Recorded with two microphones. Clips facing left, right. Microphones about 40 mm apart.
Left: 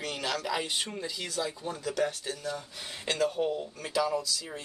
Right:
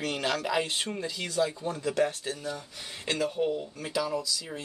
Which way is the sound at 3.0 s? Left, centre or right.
Centre.